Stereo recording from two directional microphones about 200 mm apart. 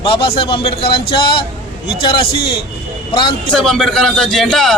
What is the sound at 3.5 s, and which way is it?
A man's voice, 5° left (ahead or behind).